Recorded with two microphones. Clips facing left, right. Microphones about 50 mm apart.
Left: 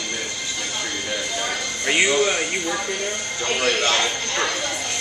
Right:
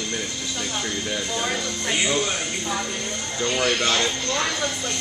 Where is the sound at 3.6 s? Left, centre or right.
Left.